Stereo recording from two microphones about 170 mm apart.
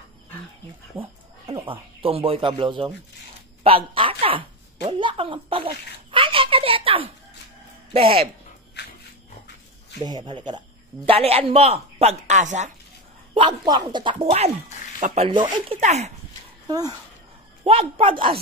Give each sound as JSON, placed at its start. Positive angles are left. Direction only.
{"t": 1.5, "sound": "a woman's voice", "side_deg": -30}
{"t": 6.1, "sound": "a sound", "side_deg": -30}
{"t": 7.9, "sound": "speech", "side_deg": -35}
{"t": 8.8, "sound": "dog", "side_deg": 80}
{"t": 10.0, "sound": "speech", "side_deg": -25}
{"t": 13.3, "sound": "speech", "side_deg": -30}
{"t": 15.0, "sound": "speech", "side_deg": -45}
{"t": 15.2, "sound": "speech", "side_deg": -25}
{"t": 15.8, "sound": "speech", "side_deg": -40}
{"t": 16.6, "sound": "speech", "side_deg": -20}
{"t": 17.6, "sound": "speech", "side_deg": -35}